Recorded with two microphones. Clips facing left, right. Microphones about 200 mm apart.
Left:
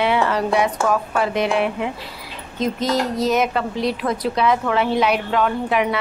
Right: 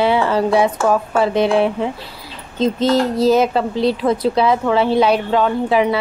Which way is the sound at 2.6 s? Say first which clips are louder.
Right 5 dB; 30° right (ahead or behind).